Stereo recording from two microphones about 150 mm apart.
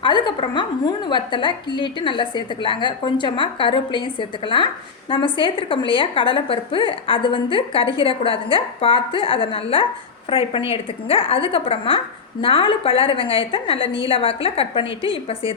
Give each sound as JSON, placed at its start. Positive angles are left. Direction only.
{"t": 0.0, "sound": "a woman's voice", "side_deg": 30}